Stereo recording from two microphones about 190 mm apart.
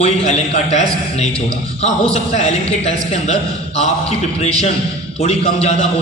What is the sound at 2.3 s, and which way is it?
A man's voice, 35° left (ahead or behind).